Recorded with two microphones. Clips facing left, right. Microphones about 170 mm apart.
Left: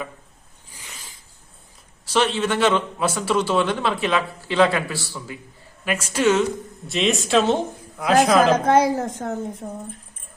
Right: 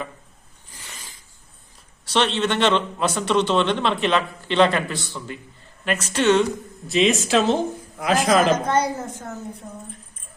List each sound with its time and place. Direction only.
2.1 s a man's voice: 5° left (ahead or behind)
8.5 s a woman's voice: 80° left